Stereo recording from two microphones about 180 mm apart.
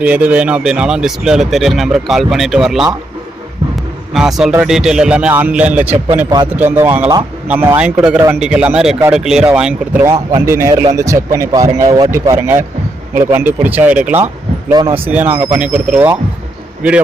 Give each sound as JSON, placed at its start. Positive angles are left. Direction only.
{"t": 0.0, "sound": "speech", "side_deg": -10}
{"t": 4.1, "sound": "speech", "side_deg": 0}
{"t": 14.7, "sound": "speech", "side_deg": -20}
{"t": 15.0, "sound": "speech", "side_deg": -10}